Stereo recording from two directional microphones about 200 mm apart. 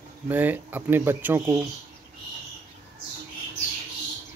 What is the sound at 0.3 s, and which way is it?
A man's voice, 10° right (ahead or behind).